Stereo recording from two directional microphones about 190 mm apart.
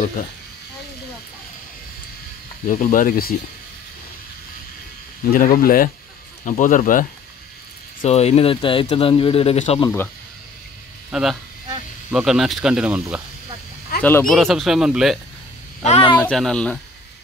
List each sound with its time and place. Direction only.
2.7 s speech: 45° left (ahead or behind)
5.3 s speech: 50° left (ahead or behind)
8.0 s speech: 35° left (ahead or behind)
11.1 s speech: 5° right (ahead or behind)
14.0 s speech: 5° left (ahead or behind)
15.8 s speech: 30° left (ahead or behind)
16.2 s speech: 5° left (ahead or behind)